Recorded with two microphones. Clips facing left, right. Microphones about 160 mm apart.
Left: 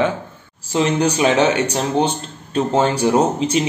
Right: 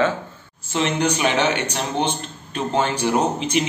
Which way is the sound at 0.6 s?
35° left (ahead or behind).